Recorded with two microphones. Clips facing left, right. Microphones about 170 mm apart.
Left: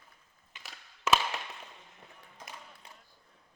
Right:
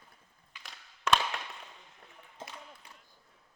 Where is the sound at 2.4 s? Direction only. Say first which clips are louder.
Right 3 dB; 25° right (ahead or behind).